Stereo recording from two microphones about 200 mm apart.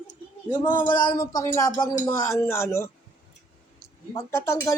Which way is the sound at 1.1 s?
20° left (ahead or behind).